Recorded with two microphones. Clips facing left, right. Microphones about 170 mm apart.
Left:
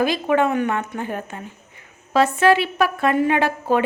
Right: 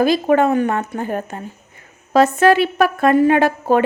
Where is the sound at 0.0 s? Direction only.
40° right (ahead or behind).